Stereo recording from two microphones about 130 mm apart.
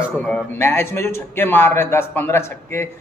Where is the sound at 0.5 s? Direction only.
20° left (ahead or behind).